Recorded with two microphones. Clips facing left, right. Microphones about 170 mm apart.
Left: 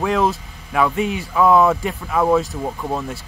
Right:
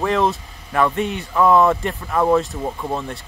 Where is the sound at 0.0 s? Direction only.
Centre (ahead or behind).